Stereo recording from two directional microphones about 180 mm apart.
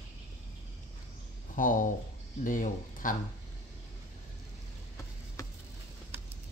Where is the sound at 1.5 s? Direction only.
45° left (ahead or behind).